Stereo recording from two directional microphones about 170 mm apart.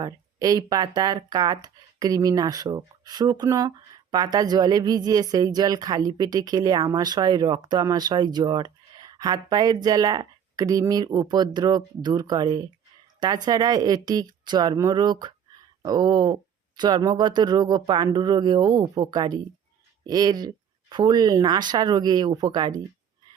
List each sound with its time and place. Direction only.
0.0 s speech: 20° right (ahead or behind)